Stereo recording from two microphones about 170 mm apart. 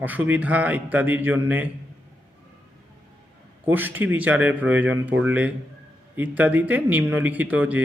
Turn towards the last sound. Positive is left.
turn(degrees=-10)  # may be behind; listen again after turning